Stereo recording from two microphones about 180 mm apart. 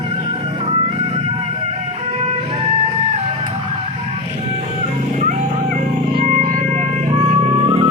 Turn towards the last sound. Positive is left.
turn(degrees=-45)  # may be behind; listen again after turning